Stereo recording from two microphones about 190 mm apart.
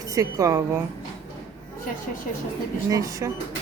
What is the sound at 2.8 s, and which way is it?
Speech, 15° right (ahead or behind).